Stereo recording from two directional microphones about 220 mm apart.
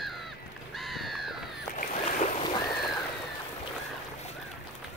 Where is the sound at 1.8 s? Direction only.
35° left (ahead or behind).